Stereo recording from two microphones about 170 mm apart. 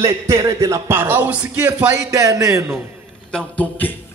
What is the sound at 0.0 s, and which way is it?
Speech, 20° right (ahead or behind).